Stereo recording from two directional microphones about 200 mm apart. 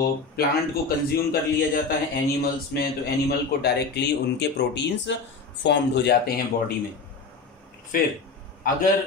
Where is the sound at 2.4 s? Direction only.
50° left (ahead or behind).